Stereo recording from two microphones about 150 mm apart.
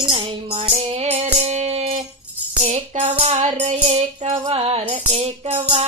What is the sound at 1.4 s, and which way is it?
Music, 45° right (ahead or behind).